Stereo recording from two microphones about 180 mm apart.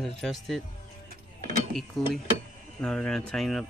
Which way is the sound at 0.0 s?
Centre (ahead or behind).